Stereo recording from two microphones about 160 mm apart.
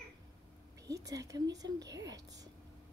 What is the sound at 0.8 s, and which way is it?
Speech, 20° right (ahead or behind).